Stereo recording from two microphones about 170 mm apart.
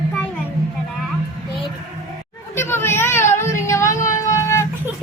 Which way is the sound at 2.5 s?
15° left (ahead or behind).